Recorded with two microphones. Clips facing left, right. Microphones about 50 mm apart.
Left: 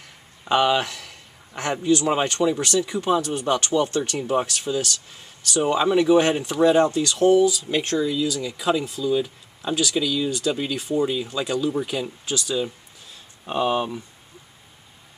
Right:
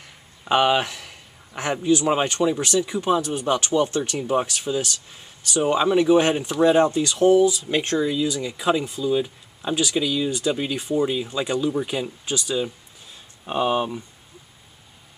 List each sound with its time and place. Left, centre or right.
0.5 s a man's voice: centre
4.2 s speech: centre
4.5 s speech: centre
5.8 s speech: centre
11.2 s speech: centre